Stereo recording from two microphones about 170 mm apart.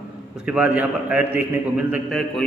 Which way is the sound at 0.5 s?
10° right (ahead or behind).